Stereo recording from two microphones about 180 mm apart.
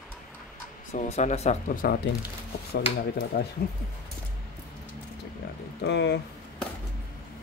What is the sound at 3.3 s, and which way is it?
Speech, 60° left (ahead or behind).